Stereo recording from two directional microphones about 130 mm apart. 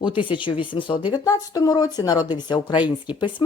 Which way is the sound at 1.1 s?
30° left (ahead or behind).